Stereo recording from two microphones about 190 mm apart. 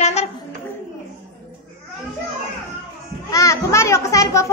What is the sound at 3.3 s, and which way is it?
A child's voice, 15° left (ahead or behind).